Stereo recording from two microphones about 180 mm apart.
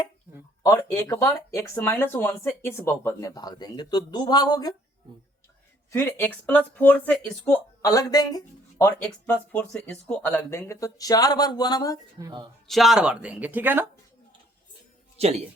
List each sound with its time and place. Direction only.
0.6 s speech: 20° left (ahead or behind)
5.9 s speech: 10° left (ahead or behind)
12.2 s speech: 25° right (ahead or behind)
12.6 s speech: centre (ahead or behind)
15.2 s speech: 35° right (ahead or behind)